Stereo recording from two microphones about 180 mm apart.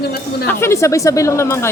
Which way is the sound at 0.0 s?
60° left (ahead or behind).